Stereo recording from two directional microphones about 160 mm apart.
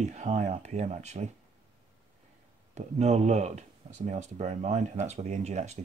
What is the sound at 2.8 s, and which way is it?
Speech, 45° right (ahead or behind).